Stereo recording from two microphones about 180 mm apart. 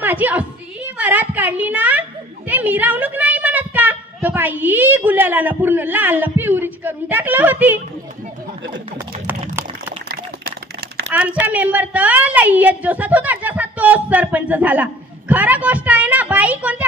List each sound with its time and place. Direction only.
0.0 s a woman's voice: 10° right (ahead or behind)
10.0 s a sound: 60° right (ahead or behind)
11.1 s a woman's voice: 10° right (ahead or behind)